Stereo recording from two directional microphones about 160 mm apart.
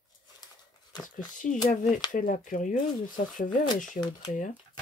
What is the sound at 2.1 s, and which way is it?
Speech, 55° left (ahead or behind).